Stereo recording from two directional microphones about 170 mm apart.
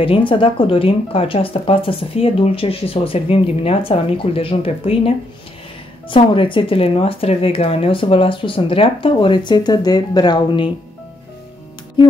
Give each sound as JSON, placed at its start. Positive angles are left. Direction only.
{"t": 0.0, "sound": "speech", "side_deg": 30}